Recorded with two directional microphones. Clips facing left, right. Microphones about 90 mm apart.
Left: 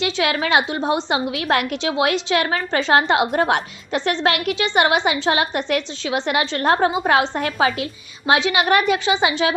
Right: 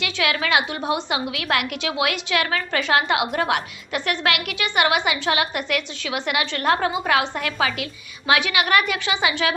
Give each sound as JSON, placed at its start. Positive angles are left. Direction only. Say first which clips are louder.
{"t": 0.0, "sound": "a woman's voice", "louder": "left 3 dB", "side_deg": 30}